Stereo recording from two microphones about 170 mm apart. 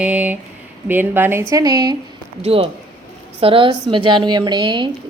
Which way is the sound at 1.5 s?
25° right (ahead or behind).